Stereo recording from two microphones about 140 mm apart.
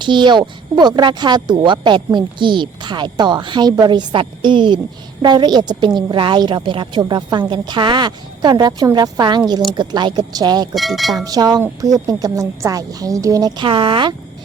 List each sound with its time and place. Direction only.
0.0 s speech: 35° right (ahead or behind)
10.8 s speech: centre (ahead or behind)
11.3 s a woman's voice: 30° right (ahead or behind)